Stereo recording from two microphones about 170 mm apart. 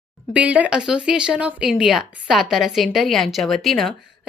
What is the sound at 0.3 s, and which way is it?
Speech, 10° right (ahead or behind).